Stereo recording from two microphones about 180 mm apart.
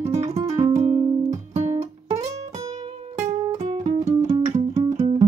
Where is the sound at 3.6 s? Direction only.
35° right (ahead or behind).